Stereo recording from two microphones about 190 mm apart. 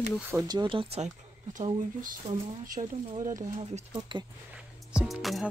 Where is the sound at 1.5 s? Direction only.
40° right (ahead or behind).